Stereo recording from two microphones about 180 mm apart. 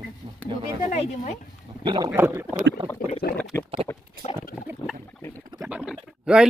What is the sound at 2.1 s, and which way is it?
Speech, 15° right (ahead or behind).